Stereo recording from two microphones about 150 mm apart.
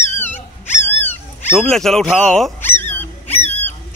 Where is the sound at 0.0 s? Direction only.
15° left (ahead or behind).